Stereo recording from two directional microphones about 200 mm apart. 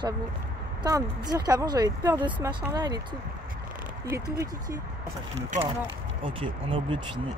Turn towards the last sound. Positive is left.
turn(degrees=-25)  # may be behind; listen again after turning